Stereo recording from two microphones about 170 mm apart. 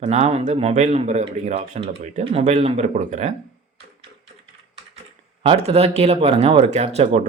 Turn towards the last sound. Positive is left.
turn(degrees=-40)  # may be behind; listen again after turning